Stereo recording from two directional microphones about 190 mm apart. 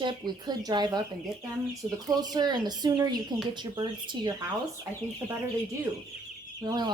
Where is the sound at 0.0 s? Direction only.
25° right (ahead or behind).